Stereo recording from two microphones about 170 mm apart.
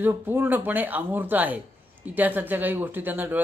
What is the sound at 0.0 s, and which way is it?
A man's voice, 10° right (ahead or behind).